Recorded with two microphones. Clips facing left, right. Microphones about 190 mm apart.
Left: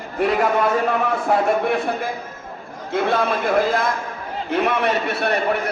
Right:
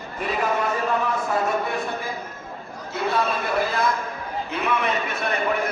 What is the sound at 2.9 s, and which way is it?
A man's voice, 55° left (ahead or behind).